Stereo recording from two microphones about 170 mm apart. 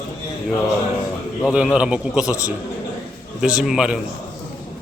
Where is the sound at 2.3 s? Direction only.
20° left (ahead or behind).